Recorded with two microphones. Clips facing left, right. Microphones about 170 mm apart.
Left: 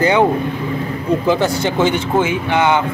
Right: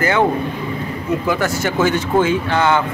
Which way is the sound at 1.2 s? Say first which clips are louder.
Left 3 dB; 25° left (ahead or behind).